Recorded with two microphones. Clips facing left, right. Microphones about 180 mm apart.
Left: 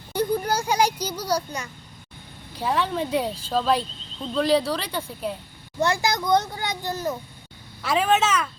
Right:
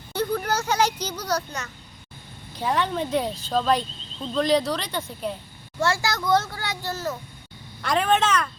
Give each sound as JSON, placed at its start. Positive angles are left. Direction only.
{"t": 0.1, "sound": "a child's voice", "side_deg": 10}
{"t": 5.8, "sound": "a child's voice", "side_deg": 15}
{"t": 7.8, "sound": "speech", "side_deg": 5}